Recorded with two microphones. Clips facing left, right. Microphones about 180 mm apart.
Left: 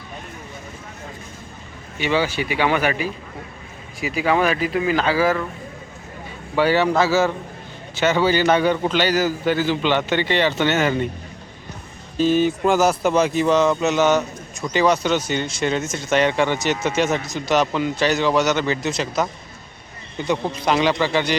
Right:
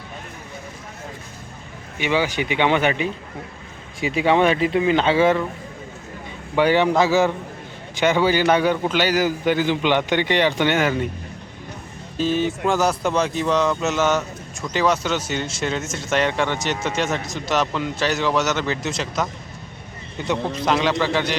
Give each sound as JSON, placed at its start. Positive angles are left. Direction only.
{"t": 2.0, "sound": "speech", "side_deg": -15}
{"t": 6.6, "sound": "speech", "side_deg": -15}
{"t": 12.1, "sound": "speech", "side_deg": 0}